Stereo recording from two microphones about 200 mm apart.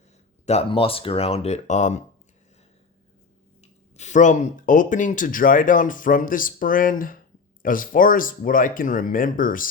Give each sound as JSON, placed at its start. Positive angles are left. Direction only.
{"t": 0.4, "sound": "speech", "side_deg": 30}
{"t": 3.6, "sound": "speech", "side_deg": 35}